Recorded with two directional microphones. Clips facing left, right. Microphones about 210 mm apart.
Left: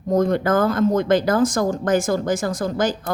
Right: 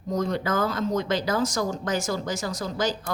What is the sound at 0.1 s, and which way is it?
A woman's voice, 55° left (ahead or behind).